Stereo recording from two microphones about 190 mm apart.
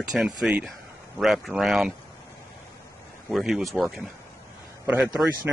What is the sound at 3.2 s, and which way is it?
A man's voice, centre (ahead or behind).